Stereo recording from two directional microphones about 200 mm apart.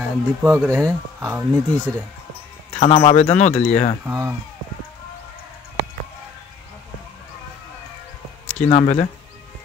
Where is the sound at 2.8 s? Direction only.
25° left (ahead or behind).